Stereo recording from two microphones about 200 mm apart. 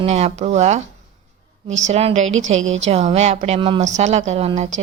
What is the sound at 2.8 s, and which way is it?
A woman's voice, 35° right (ahead or behind).